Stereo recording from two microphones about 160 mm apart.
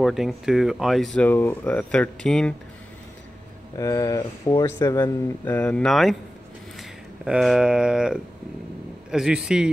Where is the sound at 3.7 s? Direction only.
20° left (ahead or behind); by 6.1 s centre (ahead or behind).